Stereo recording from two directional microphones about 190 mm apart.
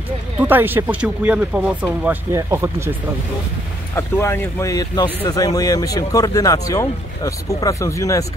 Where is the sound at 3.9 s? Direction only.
10° left (ahead or behind).